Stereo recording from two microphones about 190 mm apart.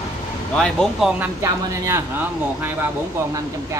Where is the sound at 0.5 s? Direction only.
5° left (ahead or behind).